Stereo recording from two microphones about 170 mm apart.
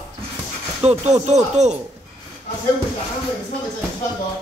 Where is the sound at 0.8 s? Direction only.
40° right (ahead or behind).